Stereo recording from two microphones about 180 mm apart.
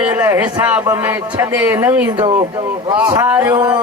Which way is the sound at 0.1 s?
10° right (ahead or behind).